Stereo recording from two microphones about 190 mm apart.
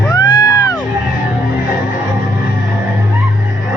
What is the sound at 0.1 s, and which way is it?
Music, 20° left (ahead or behind).